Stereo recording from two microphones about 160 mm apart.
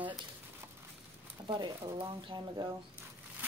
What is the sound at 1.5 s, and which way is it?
Speech, 30° right (ahead or behind).